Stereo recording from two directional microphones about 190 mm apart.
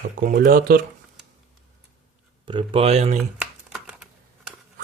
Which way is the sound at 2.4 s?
25° right (ahead or behind).